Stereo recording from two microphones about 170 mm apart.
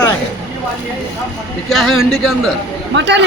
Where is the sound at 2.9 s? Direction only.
90° right.